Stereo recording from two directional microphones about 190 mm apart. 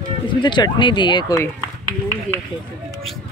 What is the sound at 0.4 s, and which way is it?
Speech, 25° left (ahead or behind).